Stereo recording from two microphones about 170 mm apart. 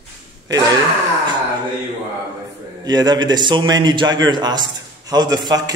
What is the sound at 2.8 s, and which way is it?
A man's voice, 25° right (ahead or behind).